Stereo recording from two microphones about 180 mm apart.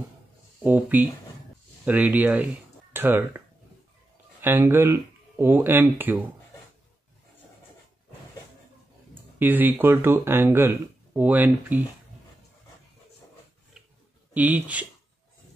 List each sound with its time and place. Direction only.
0.6 s speech: 10° right (ahead or behind)
9.1 s speech: 10° right (ahead or behind)
14.3 s speech: 10° right (ahead or behind)